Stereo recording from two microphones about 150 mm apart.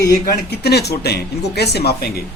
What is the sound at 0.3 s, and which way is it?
Speech, 90° left.